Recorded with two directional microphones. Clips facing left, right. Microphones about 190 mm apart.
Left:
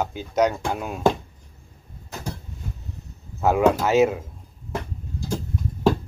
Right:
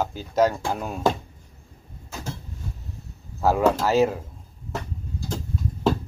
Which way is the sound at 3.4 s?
Centre (ahead or behind).